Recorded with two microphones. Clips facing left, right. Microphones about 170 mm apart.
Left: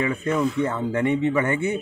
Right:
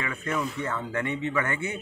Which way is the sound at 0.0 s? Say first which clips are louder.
Left 8 dB; 20° left (ahead or behind).